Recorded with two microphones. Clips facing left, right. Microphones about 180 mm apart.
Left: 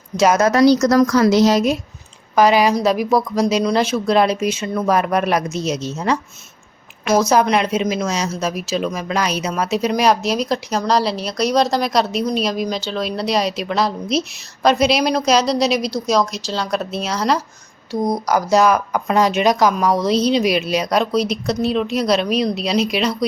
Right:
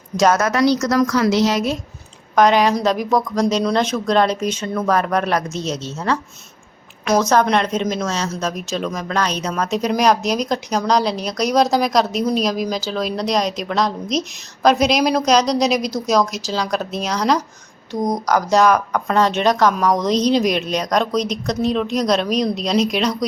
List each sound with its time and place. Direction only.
0.1 s speech: 10° right (ahead or behind)
0.5 s a woman's voice: 40° left (ahead or behind)
2.3 s a woman's voice: 5° left (ahead or behind)